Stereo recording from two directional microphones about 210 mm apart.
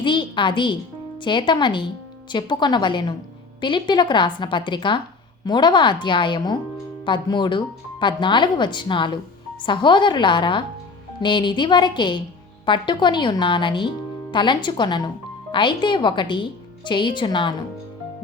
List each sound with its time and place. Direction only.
0.0 s speech: 20° left (ahead or behind)